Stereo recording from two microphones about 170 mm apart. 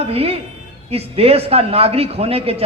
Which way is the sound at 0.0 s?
35° right (ahead or behind).